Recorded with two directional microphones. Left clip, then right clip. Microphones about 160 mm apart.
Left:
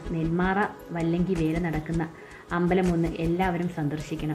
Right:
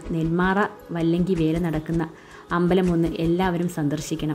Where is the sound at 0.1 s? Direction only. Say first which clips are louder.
Right 4 dB; 35° right (ahead or behind).